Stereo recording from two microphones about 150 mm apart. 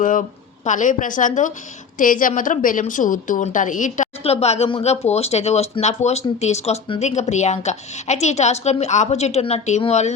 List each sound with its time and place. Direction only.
0.0 s a woman's voice: 60° left (ahead or behind)
4.2 s a woman's voice: 45° left (ahead or behind)